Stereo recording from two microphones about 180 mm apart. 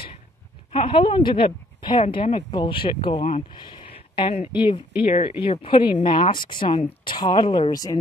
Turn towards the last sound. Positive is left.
turn(degrees=20)  # may be behind; listen again after turning